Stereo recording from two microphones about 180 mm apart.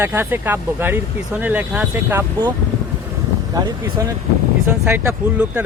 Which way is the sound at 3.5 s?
20° right (ahead or behind).